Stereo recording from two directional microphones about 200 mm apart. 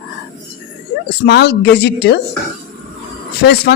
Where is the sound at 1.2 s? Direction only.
55° left (ahead or behind).